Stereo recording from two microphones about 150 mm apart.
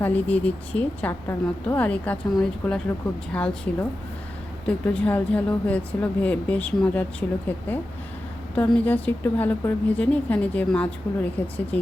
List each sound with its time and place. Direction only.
0.0 s a woman's voice: 10° left (ahead or behind)